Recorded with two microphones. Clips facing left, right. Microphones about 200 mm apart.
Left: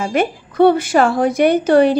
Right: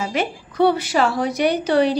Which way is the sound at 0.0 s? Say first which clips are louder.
Left 5 dB; 50° left (ahead or behind).